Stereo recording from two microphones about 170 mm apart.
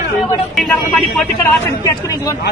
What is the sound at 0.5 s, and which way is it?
Speech, centre (ahead or behind).